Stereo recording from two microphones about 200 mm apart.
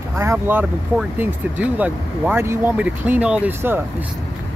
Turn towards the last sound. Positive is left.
turn(degrees=-10)  # may be behind; listen again after turning